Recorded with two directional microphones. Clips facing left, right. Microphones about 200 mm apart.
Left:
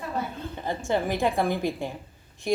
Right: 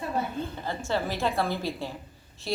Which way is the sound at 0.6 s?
15° left (ahead or behind).